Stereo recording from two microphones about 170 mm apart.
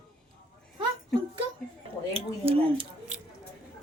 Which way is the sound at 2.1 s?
35° right (ahead or behind).